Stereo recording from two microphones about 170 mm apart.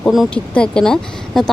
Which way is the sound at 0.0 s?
Centre (ahead or behind).